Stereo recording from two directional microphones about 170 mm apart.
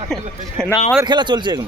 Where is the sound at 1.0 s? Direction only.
25° right (ahead or behind).